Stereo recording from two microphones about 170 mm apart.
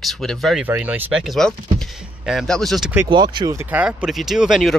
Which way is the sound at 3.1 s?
25° right (ahead or behind).